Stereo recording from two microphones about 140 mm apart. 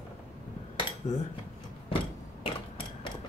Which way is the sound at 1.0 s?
50° left (ahead or behind).